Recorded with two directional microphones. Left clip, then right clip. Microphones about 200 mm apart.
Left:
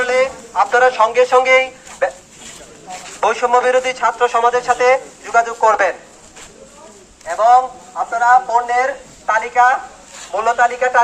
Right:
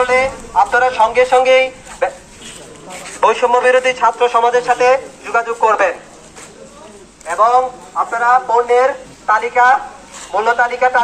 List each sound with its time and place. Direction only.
0.0 s speech: 20° left (ahead or behind)
3.1 s a man's voice: 45° left (ahead or behind)
8.2 s speech: 30° left (ahead or behind)